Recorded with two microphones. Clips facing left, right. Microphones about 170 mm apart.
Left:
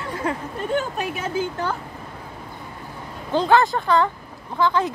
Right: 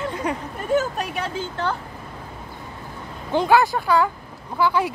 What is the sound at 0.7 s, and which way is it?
Speech, centre (ahead or behind).